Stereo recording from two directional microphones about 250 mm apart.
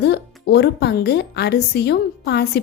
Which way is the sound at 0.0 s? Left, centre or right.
Left.